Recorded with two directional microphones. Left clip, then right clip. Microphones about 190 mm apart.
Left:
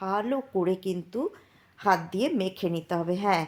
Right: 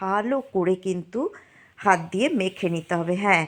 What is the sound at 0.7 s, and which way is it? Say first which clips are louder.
Speech: right 4 dB; 5° right (ahead or behind).